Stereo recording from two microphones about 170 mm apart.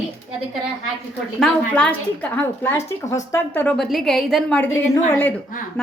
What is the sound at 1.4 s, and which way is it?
A woman's voice, 10° left (ahead or behind).